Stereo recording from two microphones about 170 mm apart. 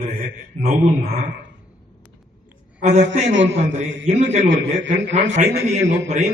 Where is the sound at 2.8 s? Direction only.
40° right (ahead or behind).